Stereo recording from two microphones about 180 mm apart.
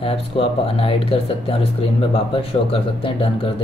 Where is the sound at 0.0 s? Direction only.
30° left (ahead or behind).